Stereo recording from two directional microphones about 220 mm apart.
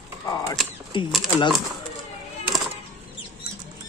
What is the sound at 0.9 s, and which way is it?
Speech, 20° left (ahead or behind).